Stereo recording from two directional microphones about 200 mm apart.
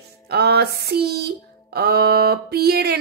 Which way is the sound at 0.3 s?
55° right (ahead or behind).